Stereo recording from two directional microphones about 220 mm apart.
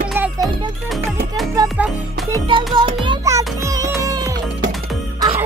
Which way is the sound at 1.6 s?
5° right (ahead or behind).